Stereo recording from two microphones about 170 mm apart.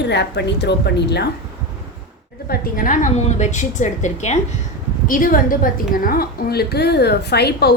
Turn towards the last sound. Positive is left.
turn(degrees=70)  # may be behind; listen again after turning